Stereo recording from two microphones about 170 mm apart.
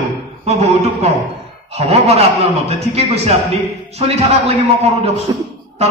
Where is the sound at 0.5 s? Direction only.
40° right (ahead or behind).